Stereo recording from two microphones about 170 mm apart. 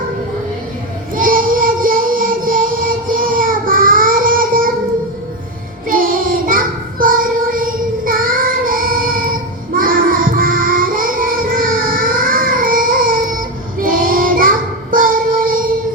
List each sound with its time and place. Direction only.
1.1 s child singing: 55° right (ahead or behind)
5.9 s child singing: 55° right (ahead or behind)